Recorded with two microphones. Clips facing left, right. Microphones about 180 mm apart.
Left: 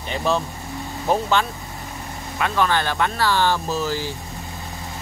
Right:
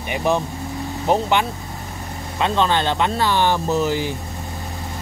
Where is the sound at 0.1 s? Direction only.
15° right (ahead or behind).